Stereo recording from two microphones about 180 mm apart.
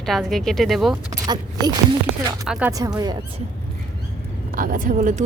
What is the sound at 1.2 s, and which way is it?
Speech, 20° right (ahead or behind).